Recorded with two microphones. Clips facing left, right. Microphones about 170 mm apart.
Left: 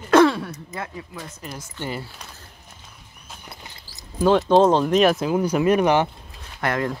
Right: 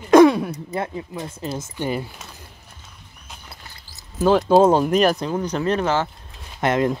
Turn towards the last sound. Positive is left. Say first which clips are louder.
# right 5 dB
turn(degrees=-20)  # may be behind; listen again after turning